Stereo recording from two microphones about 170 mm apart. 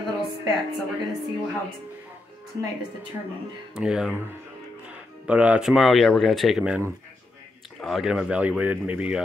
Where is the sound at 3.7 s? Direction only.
5° right (ahead or behind).